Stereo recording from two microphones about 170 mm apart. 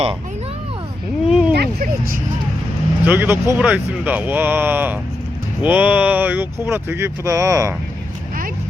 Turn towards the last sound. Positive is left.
turn(degrees=-20)  # may be behind; listen again after turning